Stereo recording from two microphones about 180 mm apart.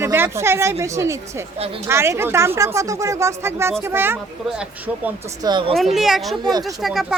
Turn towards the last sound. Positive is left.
turn(degrees=0)  # may be behind; listen again after turning